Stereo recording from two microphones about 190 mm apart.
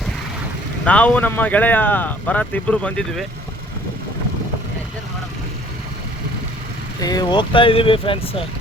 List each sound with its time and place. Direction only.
0.9 s speech: 5° left (ahead or behind)
7.0 s speech: 20° left (ahead or behind)